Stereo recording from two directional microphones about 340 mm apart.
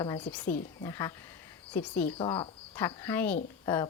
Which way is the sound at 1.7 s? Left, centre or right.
Centre.